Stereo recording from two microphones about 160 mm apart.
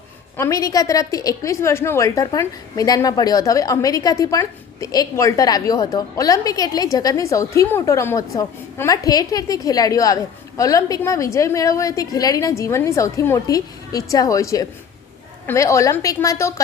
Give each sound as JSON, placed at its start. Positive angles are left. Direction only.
{"t": 0.3, "sound": "a woman's voice", "side_deg": 20}